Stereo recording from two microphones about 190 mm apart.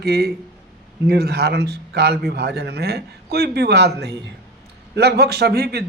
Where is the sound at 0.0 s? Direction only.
55° right (ahead or behind).